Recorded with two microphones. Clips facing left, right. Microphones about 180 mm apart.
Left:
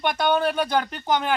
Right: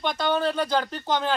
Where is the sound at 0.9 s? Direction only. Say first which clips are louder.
Left 2 dB; 20° left (ahead or behind).